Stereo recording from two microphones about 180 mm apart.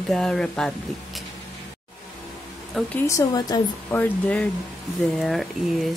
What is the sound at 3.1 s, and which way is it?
Speech, 20° left (ahead or behind).